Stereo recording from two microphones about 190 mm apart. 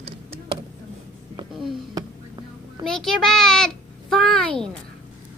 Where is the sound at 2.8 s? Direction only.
Centre (ahead or behind).